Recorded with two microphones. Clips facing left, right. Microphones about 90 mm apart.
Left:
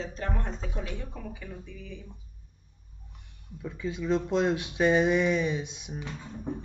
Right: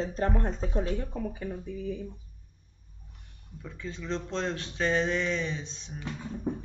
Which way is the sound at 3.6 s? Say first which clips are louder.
Left 6 dB; 10° left (ahead or behind).